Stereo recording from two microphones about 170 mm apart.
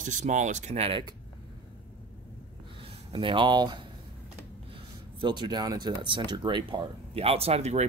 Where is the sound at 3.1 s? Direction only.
30° right (ahead or behind).